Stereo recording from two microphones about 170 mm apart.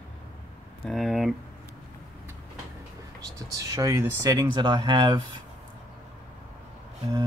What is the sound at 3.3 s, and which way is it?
Speech, 20° right (ahead or behind).